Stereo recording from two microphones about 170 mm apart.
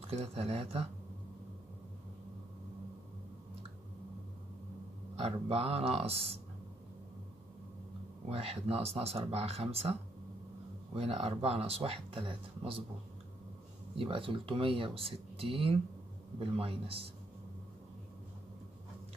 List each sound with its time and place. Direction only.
0.1 s speech: 35° right (ahead or behind)
5.1 s speech: 35° right (ahead or behind)
8.3 s speech: 35° right (ahead or behind)
11.0 s speech: 40° right (ahead or behind)
13.9 s speech: 30° right (ahead or behind)